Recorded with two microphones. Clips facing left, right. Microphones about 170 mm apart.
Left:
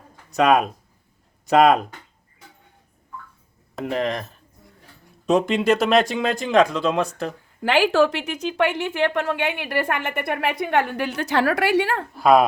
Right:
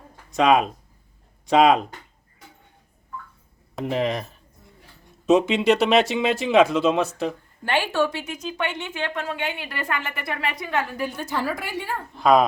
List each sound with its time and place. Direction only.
0.3 s speech: centre (ahead or behind)
3.8 s speech: centre (ahead or behind)
7.6 s a woman's voice: 90° left
12.1 s speech: 5° left (ahead or behind)